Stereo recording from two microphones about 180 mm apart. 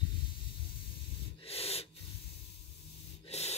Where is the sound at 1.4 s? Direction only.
35° left (ahead or behind).